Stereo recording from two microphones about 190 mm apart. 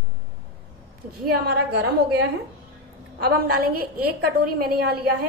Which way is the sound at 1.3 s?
60° right (ahead or behind).